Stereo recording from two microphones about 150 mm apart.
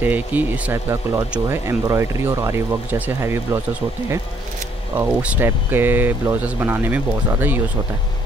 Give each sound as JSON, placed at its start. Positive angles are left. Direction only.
{"t": 0.0, "sound": "speech", "side_deg": -10}
{"t": 4.9, "sound": "speech", "side_deg": -10}